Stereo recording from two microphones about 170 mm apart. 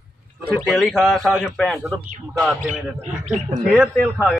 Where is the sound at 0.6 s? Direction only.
Centre (ahead or behind).